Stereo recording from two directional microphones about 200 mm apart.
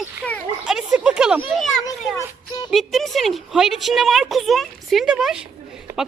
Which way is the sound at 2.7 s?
Centre (ahead or behind).